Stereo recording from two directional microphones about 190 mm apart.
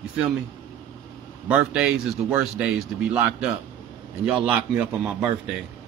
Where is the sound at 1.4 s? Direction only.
5° right (ahead or behind).